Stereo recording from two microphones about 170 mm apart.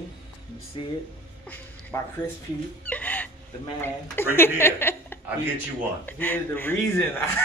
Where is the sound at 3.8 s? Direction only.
15° left (ahead or behind).